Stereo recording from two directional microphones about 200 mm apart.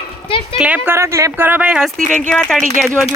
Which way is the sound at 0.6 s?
10° right (ahead or behind).